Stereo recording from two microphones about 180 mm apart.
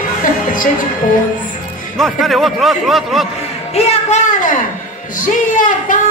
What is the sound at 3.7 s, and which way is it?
Music, 35° left (ahead or behind).